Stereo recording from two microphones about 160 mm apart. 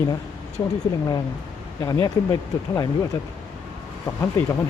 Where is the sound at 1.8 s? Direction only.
25° left (ahead or behind).